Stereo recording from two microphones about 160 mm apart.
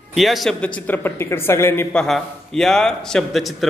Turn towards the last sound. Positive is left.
turn(degrees=0)  # may be behind; listen again after turning